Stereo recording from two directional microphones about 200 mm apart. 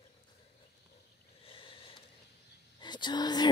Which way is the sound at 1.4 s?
25° left (ahead or behind).